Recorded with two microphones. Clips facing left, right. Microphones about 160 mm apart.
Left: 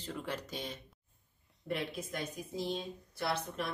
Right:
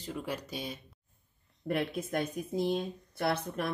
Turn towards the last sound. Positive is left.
turn(degrees=-55)  # may be behind; listen again after turning